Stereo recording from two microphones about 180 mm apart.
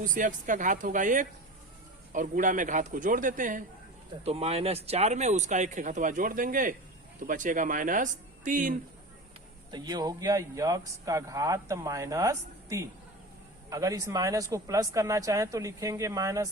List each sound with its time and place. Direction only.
0.0 s speech: 45° right (ahead or behind)
4.3 s speech: 35° right (ahead or behind)
9.7 s speech: 20° right (ahead or behind)